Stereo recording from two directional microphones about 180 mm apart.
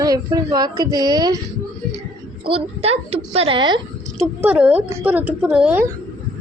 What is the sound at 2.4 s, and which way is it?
A woman's voice, 30° right (ahead or behind).